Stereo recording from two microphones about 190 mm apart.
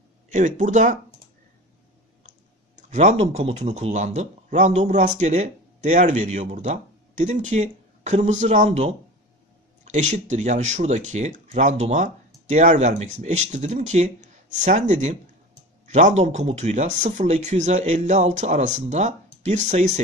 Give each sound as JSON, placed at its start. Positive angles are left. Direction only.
{"t": 0.3, "sound": "speech", "side_deg": -40}
{"t": 2.9, "sound": "speech", "side_deg": -40}